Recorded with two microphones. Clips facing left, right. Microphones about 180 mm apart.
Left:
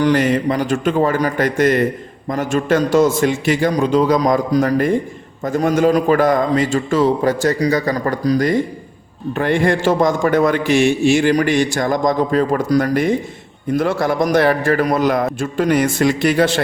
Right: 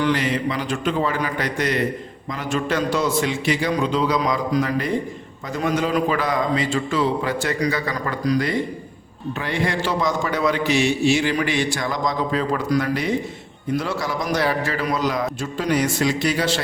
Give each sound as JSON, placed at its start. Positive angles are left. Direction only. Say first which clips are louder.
{"t": 0.0, "sound": "a man's voice", "louder": "left 6 dB", "side_deg": 50}
{"t": 9.4, "sound": "a man's voice", "louder": "left 8 dB", "side_deg": 50}